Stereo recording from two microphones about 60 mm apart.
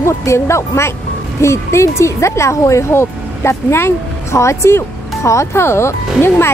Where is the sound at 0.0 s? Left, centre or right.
Left.